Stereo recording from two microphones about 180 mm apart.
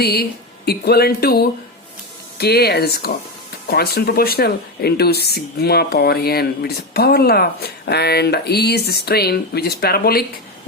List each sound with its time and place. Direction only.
0.0 s speech: 60° left (ahead or behind)